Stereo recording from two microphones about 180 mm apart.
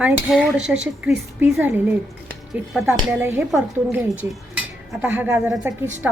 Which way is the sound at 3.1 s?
10° right (ahead or behind).